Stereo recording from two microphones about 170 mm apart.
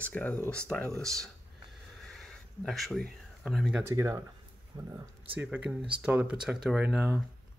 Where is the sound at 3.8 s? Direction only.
15° right (ahead or behind).